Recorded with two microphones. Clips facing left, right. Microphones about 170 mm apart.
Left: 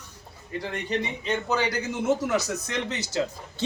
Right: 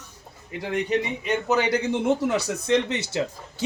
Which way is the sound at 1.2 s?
20° right (ahead or behind).